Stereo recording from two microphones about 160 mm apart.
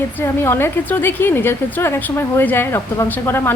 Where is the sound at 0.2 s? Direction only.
15° left (ahead or behind).